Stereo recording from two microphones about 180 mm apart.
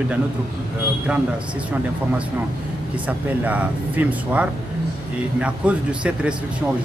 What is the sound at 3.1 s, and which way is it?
Speech, 10° right (ahead or behind).